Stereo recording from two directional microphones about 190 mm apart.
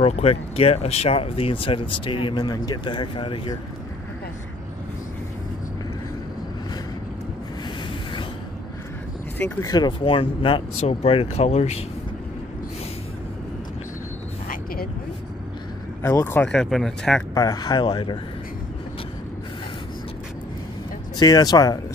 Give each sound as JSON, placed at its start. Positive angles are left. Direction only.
{"t": 0.0, "sound": "speech", "side_deg": 30}
{"t": 9.4, "sound": "speech", "side_deg": 15}
{"t": 16.0, "sound": "speech", "side_deg": 15}
{"t": 17.3, "sound": "speech", "side_deg": 20}
{"t": 21.2, "sound": "speech", "side_deg": 20}